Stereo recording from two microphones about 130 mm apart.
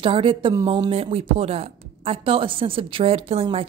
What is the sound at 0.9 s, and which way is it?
A woman's voice, 50° right (ahead or behind).